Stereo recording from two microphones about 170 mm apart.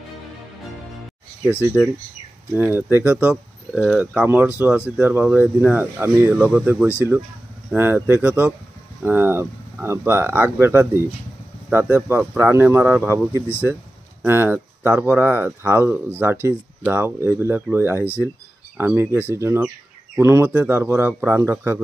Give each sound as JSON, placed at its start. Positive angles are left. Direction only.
{"t": 1.8, "sound": "speech", "side_deg": -5}
{"t": 14.2, "sound": "speech", "side_deg": -15}